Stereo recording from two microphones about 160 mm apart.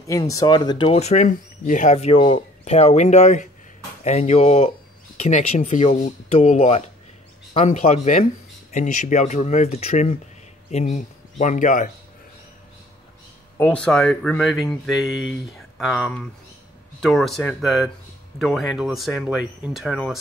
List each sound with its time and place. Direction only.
0.0 s speech: 20° left (ahead or behind)
0.9 s speech: 45° left (ahead or behind)
13.6 s speech: 5° left (ahead or behind)